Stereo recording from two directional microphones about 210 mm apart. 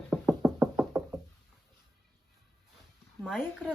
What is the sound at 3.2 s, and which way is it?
Speech, centre (ahead or behind).